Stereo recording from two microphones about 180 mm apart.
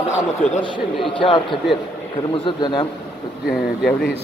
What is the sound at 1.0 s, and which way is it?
Speech, 25° left (ahead or behind).